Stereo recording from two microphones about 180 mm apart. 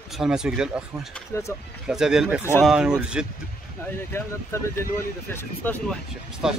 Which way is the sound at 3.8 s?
15° left (ahead or behind).